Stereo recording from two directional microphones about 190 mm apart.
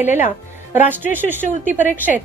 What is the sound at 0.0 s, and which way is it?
A woman's voice, 10° right (ahead or behind).